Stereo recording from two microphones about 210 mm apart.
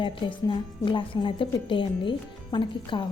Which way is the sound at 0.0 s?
25° left (ahead or behind).